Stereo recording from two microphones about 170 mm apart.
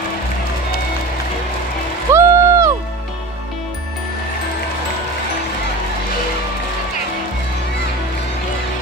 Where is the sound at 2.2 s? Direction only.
15° right (ahead or behind).